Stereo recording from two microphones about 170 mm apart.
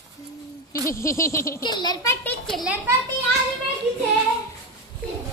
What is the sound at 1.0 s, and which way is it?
A child's voice, 15° left (ahead or behind).